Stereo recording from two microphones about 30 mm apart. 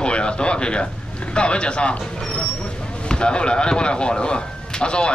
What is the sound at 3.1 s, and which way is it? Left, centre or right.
Speech, left.